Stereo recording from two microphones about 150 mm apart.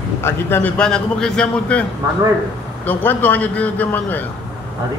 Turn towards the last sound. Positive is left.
turn(degrees=10)  # may be behind; listen again after turning